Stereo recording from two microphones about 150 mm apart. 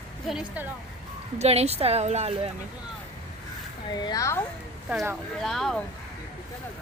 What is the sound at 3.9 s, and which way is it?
Speech, 25° left (ahead or behind).